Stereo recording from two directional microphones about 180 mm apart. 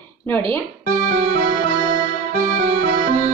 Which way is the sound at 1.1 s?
45° right (ahead or behind).